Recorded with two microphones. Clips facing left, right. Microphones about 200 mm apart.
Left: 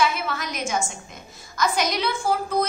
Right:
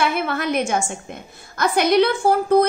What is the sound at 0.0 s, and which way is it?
A woman's voice, 60° right (ahead or behind).